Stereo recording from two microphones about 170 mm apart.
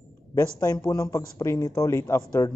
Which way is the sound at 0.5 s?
25° left (ahead or behind).